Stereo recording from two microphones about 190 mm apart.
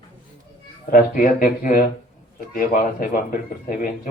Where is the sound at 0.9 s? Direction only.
45° left (ahead or behind).